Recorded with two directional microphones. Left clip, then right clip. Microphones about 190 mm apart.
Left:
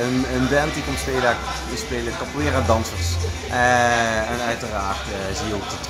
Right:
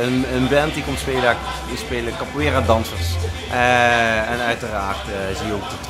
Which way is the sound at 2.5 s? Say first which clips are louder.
Right 2 dB; 25° right (ahead or behind).